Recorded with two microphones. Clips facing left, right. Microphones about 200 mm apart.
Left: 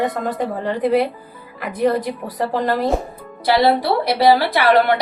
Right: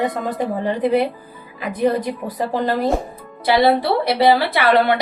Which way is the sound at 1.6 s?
20° right (ahead or behind).